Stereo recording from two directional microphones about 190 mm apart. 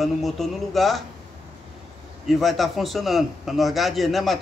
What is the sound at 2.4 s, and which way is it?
A man's voice, centre (ahead or behind).